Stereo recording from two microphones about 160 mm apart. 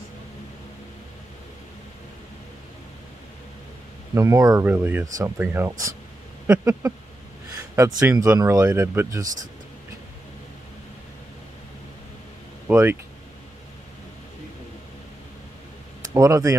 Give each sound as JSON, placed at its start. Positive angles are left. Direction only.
{"t": 4.1, "sound": "speech", "side_deg": -20}
{"t": 6.4, "sound": "a sound", "side_deg": -15}
{"t": 8.1, "sound": "speech", "side_deg": -20}
{"t": 12.6, "sound": "speech", "side_deg": -15}
{"t": 16.1, "sound": "speech", "side_deg": -20}